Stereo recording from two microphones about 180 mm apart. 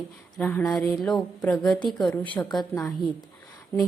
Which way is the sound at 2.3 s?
25° left (ahead or behind).